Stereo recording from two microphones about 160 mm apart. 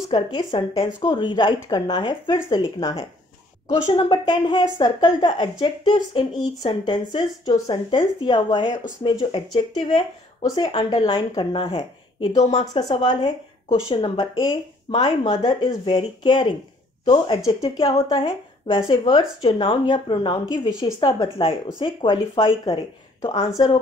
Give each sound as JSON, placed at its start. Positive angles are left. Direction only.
{"t": 0.1, "sound": "speech", "side_deg": 30}